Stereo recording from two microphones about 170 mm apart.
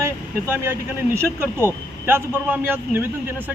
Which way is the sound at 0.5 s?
15° right (ahead or behind).